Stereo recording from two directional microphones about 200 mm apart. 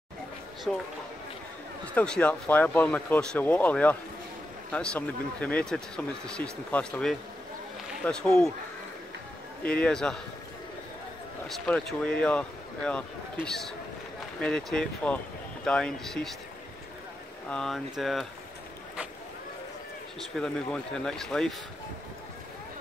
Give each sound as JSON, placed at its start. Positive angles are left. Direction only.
{"t": 0.7, "sound": "speech", "side_deg": 0}
{"t": 2.0, "sound": "speech", "side_deg": 5}
{"t": 9.6, "sound": "speech", "side_deg": 5}
{"t": 11.4, "sound": "speech", "side_deg": 5}
{"t": 17.5, "sound": "speech", "side_deg": 0}
{"t": 20.3, "sound": "speech", "side_deg": 5}